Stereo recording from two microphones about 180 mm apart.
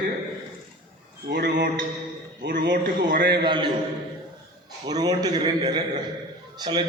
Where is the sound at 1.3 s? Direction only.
65° right (ahead or behind).